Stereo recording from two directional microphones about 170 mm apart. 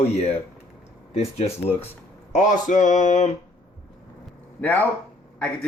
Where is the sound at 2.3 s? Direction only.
45° left (ahead or behind).